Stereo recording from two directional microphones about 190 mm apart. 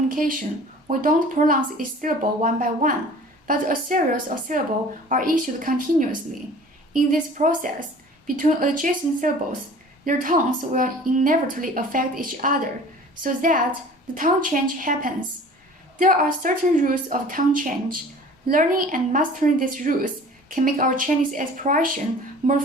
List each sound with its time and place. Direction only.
0.1 s a woman's voice: 50° right (ahead or behind)